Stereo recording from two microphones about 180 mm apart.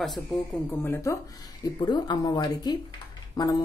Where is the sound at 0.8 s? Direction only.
15° left (ahead or behind).